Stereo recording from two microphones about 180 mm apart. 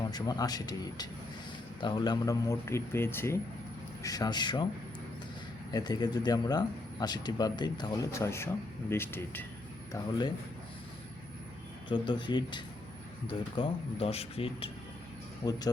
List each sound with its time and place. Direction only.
0.1 s a man's voice: 20° left (ahead or behind)
5.7 s a man's voice: 20° left (ahead or behind)
9.9 s a man's voice: 25° left (ahead or behind)
11.9 s a man's voice: 25° left (ahead or behind)